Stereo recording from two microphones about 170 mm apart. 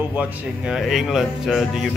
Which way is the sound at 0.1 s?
5° right (ahead or behind).